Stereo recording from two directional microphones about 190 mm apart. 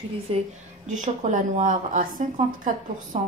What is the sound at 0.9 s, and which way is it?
A woman's voice, 40° right (ahead or behind).